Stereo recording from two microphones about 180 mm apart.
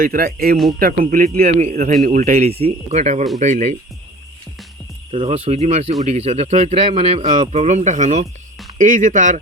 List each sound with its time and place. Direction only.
0.0 s speech: 50° right (ahead or behind)
5.1 s speech: 35° right (ahead or behind)